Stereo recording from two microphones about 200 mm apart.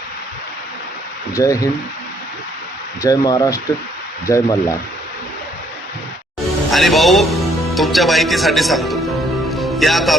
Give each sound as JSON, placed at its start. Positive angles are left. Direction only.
{"t": 1.3, "sound": "speech", "side_deg": 15}
{"t": 3.0, "sound": "speech", "side_deg": 20}
{"t": 6.7, "sound": "a man's voice", "side_deg": 0}
{"t": 9.5, "sound": "music", "side_deg": 0}